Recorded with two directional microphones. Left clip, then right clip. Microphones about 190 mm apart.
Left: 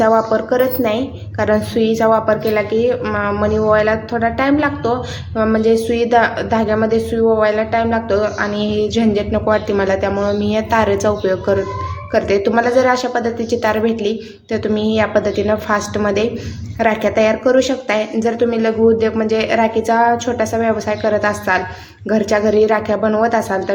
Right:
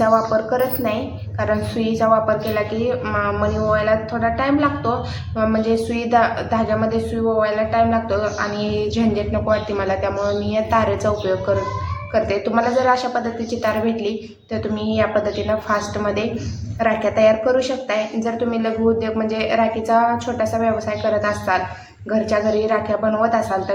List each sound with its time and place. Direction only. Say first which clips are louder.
1.4 s a woman's voice: left 6 dB; 45° left (ahead or behind)